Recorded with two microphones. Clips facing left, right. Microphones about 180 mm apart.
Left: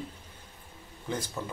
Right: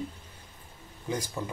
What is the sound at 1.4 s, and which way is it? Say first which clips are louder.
Speech: right 2 dB; 15° right (ahead or behind).